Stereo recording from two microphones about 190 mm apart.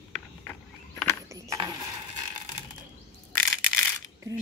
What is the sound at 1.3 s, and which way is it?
Mechanisms, 20° right (ahead or behind).